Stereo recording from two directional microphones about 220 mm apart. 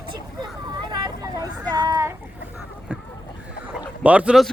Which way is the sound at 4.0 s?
5° right (ahead or behind).